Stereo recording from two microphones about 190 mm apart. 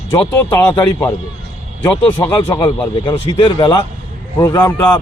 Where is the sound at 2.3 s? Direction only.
20° left (ahead or behind).